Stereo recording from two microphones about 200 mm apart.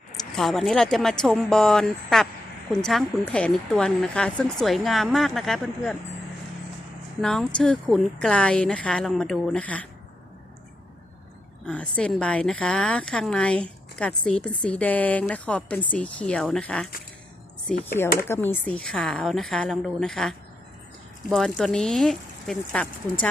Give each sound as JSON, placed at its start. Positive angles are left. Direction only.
{"t": 0.3, "sound": "a woman's voice", "side_deg": 0}
{"t": 7.2, "sound": "a woman's voice", "side_deg": 0}
{"t": 11.6, "sound": "a woman's voice", "side_deg": 5}